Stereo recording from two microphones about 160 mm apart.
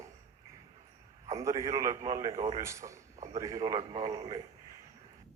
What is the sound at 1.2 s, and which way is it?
A man's voice, 20° right (ahead or behind).